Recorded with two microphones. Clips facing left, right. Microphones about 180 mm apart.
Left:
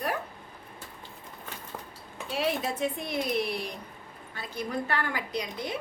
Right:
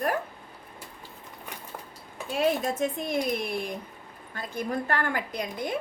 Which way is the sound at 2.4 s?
45° right (ahead or behind).